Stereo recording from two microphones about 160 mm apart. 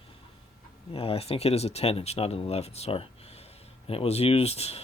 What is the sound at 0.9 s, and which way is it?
Speech, 35° left (ahead or behind).